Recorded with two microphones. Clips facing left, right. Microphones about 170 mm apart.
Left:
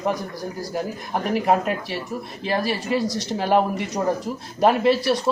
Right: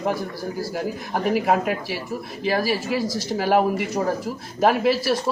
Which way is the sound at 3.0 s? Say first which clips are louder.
Even; 20° left (ahead or behind).